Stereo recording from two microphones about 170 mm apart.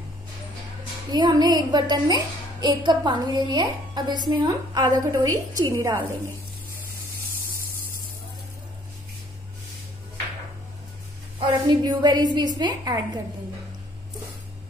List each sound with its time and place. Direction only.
1.1 s a woman's voice: 25° right (ahead or behind)
11.3 s a woman's voice: 25° right (ahead or behind)